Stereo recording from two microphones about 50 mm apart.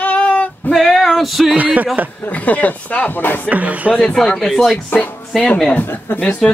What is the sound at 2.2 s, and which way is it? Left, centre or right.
Speech, left.